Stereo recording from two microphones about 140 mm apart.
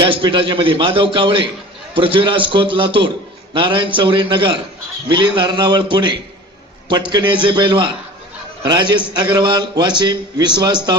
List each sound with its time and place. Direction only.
0.0 s a man's voice: 35° right (ahead or behind)